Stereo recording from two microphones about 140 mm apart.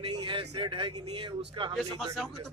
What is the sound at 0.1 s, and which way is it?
Speech, 35° right (ahead or behind).